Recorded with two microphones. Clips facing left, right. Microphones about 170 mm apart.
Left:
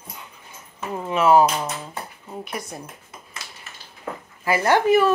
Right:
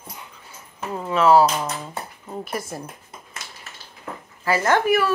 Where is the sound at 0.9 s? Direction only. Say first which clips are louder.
Right 1 dB; 15° left (ahead or behind).